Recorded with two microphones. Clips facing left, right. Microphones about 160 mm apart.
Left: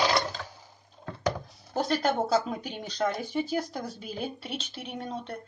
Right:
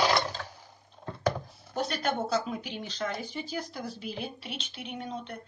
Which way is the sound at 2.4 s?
45° left (ahead or behind).